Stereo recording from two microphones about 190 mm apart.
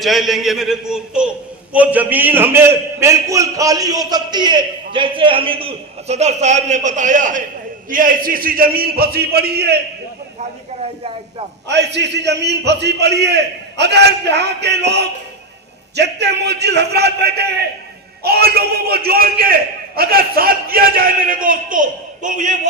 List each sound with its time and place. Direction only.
0.0 s a man's voice: centre (ahead or behind); by 9.7 s 60° right (ahead or behind)
10.8 s a man's voice: 30° right (ahead or behind)
11.7 s a man's voice: 65° right (ahead or behind); by 22.5 s 45° right (ahead or behind)